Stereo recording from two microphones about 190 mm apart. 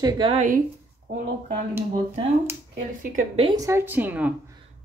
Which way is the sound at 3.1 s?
35° right (ahead or behind).